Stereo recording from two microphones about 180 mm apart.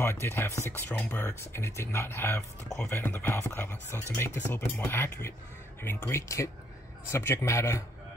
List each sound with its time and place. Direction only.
0.0 s speech: 15° left (ahead or behind)